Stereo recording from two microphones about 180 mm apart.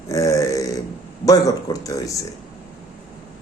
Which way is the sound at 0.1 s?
15° left (ahead or behind).